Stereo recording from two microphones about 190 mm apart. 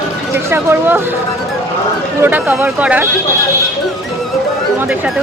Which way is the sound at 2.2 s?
10° right (ahead or behind).